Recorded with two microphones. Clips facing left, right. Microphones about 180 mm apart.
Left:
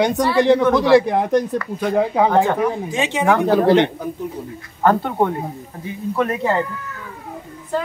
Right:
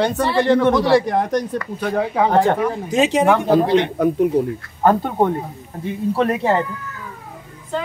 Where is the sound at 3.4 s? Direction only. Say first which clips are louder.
Left 1 dB; 70° left (ahead or behind).